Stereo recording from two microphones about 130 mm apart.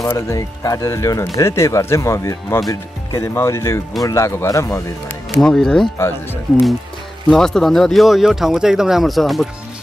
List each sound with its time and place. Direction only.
0.0 s speech: 25° left (ahead or behind); by 5.9 s 5° left (ahead or behind)
5.9 s speech: 20° left (ahead or behind)
7.2 s speech: 5° left (ahead or behind)